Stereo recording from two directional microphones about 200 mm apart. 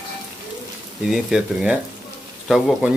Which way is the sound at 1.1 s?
Centre (ahead or behind).